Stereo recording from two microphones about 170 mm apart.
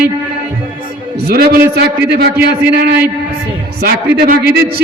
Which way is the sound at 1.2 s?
65° right (ahead or behind).